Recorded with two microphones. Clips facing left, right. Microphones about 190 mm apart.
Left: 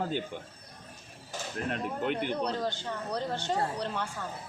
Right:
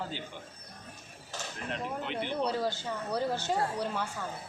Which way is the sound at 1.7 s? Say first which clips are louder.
Left 4 dB; 50° left (ahead or behind).